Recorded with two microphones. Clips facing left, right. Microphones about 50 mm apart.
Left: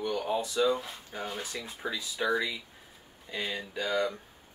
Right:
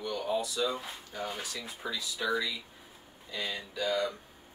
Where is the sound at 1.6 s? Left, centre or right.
Centre.